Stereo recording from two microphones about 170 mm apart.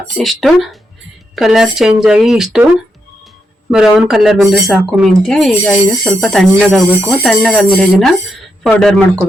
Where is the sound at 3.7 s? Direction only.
5° right (ahead or behind).